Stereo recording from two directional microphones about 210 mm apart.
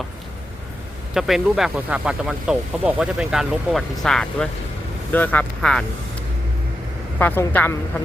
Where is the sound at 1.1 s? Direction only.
Centre (ahead or behind).